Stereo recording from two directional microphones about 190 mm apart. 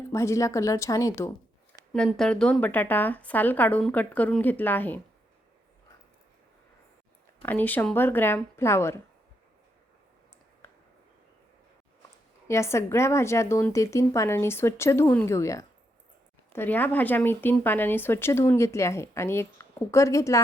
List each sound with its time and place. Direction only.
0.1 s speech: 15° left (ahead or behind)
1.9 s speech: centre (ahead or behind)
7.4 s speech: 10° left (ahead or behind)
12.5 s speech: 15° left (ahead or behind)